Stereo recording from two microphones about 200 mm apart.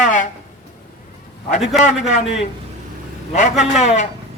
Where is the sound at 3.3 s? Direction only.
40° left (ahead or behind).